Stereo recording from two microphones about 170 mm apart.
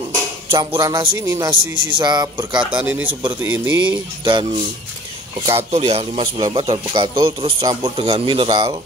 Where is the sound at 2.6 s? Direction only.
10° right (ahead or behind).